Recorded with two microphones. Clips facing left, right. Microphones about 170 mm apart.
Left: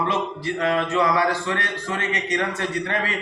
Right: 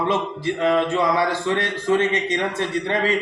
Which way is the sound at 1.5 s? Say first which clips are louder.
Right 8 dB; 20° right (ahead or behind).